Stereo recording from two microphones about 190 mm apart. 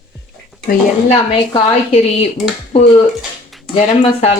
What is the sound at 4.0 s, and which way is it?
Speech, 30° left (ahead or behind).